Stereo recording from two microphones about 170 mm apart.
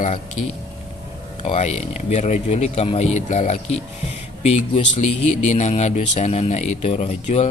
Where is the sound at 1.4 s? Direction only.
40° left (ahead or behind).